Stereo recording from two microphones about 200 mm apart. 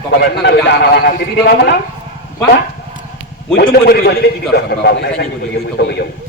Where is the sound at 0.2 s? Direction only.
60° left (ahead or behind).